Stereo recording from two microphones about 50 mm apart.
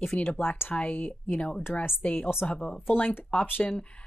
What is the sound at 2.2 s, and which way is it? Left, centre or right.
Speech, left.